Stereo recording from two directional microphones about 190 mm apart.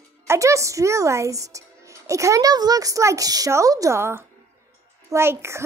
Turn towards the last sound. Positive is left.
turn(degrees=-15)  # may be behind; listen again after turning